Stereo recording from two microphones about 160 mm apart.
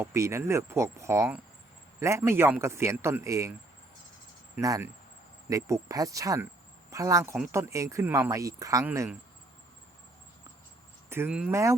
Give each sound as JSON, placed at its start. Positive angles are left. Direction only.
{"t": 0.0, "sound": "speech", "side_deg": -15}
{"t": 4.5, "sound": "speech", "side_deg": -15}
{"t": 11.1, "sound": "speech", "side_deg": -10}